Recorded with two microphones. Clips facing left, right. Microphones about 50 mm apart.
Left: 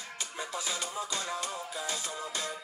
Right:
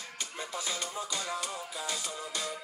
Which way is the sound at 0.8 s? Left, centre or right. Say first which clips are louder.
Left 1 dB; left.